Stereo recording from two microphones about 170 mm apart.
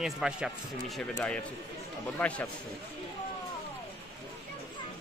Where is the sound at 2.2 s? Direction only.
10° left (ahead or behind).